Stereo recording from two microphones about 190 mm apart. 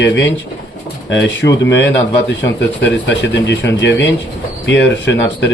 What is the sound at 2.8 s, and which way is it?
Speech, 70° left (ahead or behind).